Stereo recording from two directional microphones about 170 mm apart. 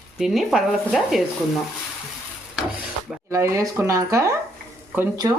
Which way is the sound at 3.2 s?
15° right (ahead or behind).